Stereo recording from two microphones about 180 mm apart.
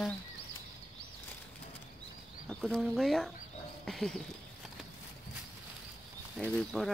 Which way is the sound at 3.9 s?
Centre (ahead or behind).